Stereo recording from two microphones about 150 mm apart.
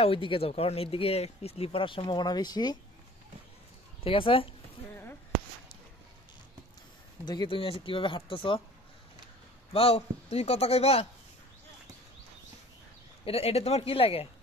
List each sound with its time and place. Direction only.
0.0 s speech: 35° left (ahead or behind)
4.0 s speech: 35° left (ahead or behind)
7.2 s speech: 30° left (ahead or behind)
9.7 s speech: 40° left (ahead or behind)
13.2 s speech: 40° left (ahead or behind)